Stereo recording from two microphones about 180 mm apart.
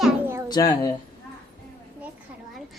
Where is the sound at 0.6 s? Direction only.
20° left (ahead or behind).